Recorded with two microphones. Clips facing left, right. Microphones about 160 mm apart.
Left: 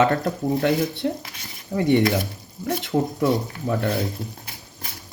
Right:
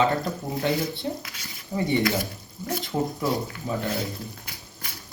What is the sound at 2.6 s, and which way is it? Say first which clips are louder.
Speech: left 4 dB; 60° left (ahead or behind).